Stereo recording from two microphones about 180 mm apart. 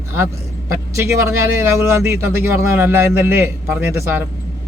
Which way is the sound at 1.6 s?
15° right (ahead or behind).